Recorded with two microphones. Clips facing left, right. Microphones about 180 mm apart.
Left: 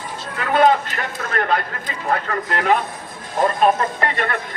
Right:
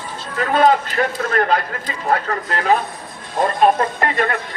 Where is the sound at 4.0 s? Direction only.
45° right (ahead or behind).